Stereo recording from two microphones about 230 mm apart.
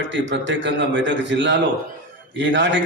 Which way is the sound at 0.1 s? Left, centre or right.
Right.